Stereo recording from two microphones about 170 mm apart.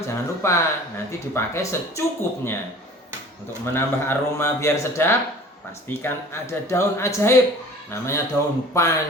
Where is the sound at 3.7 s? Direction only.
15° left (ahead or behind).